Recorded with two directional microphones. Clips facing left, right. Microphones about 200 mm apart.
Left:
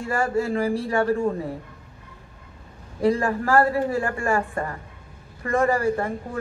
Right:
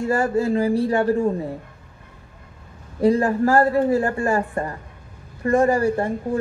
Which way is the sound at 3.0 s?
35° right (ahead or behind).